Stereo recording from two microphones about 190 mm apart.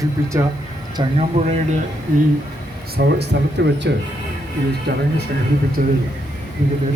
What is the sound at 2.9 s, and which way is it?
Speech, 60° right (ahead or behind).